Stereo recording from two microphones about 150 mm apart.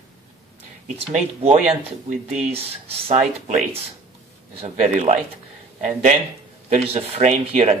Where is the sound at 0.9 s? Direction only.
45° right (ahead or behind).